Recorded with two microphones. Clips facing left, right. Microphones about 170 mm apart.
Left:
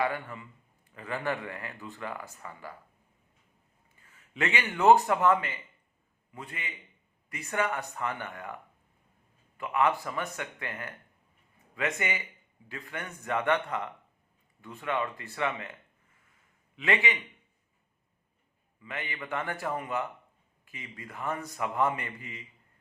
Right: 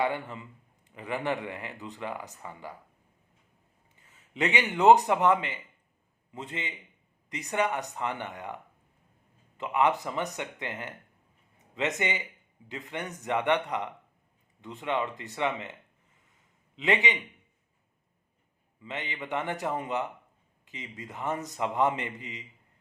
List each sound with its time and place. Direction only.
0.0 s a man's voice: 20° right (ahead or behind)
3.9 s a man's voice: 20° right (ahead or behind)
16.1 s a sound: 20° right (ahead or behind)
18.8 s a man's voice: 20° right (ahead or behind)